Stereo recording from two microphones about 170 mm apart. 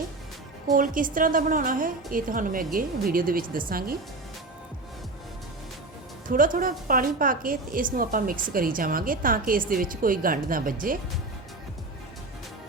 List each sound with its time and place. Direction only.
0.7 s a woman's voice: 50° right (ahead or behind)
6.2 s a woman's voice: 55° right (ahead or behind)